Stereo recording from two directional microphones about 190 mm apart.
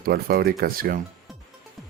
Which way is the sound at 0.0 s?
50° right (ahead or behind).